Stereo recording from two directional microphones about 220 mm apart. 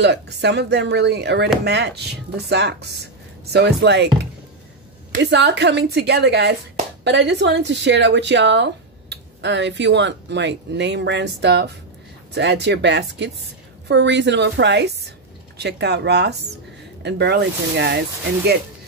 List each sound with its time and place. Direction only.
0.0 s speech: 50° right (ahead or behind)
5.2 s a woman's voice: 50° right (ahead or behind)